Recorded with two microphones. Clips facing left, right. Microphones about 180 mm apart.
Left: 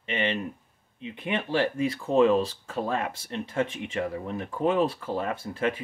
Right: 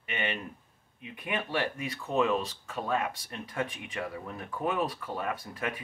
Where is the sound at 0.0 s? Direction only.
25° left (ahead or behind).